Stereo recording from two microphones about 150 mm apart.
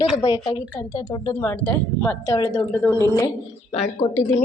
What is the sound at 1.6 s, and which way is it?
A woman's voice, 10° left (ahead or behind).